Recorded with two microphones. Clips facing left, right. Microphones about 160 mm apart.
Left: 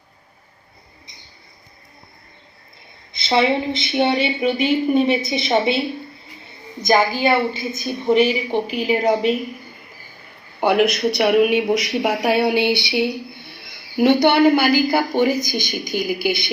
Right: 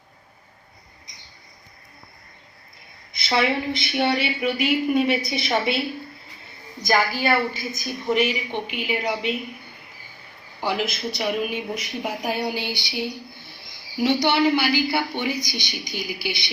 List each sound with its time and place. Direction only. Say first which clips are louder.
3.1 s a woman's voice: left 5 dB; 25° left (ahead or behind); by 9.6 s 40° left (ahead or behind)
10.6 s speech: left 9 dB; 60° left (ahead or behind)